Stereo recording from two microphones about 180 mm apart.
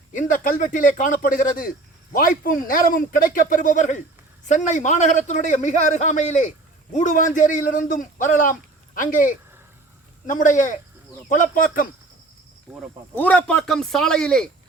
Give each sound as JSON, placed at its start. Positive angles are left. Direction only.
{"t": 0.1, "sound": "a man's voice", "side_deg": 45}
{"t": 12.7, "sound": "a man's voice", "side_deg": -5}
{"t": 13.1, "sound": "a man's voice", "side_deg": 10}